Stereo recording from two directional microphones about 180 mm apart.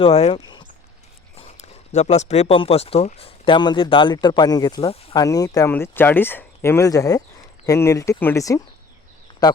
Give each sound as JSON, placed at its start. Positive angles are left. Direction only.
{"t": 0.0, "sound": "speech", "side_deg": 35}
{"t": 0.3, "sound": "speech", "side_deg": 25}
{"t": 1.4, "sound": "speech", "side_deg": 40}
{"t": 5.2, "sound": "speech", "side_deg": 20}